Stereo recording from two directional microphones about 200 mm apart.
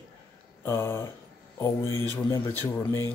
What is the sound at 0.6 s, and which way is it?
Speech, 15° left (ahead or behind).